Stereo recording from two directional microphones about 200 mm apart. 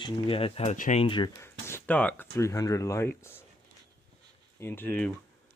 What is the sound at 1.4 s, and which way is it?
Speech, 10° left (ahead or behind).